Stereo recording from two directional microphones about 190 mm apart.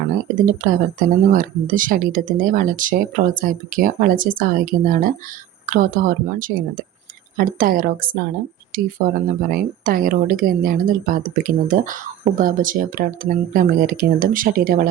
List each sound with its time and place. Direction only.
0.0 s speech: 45° right (ahead or behind)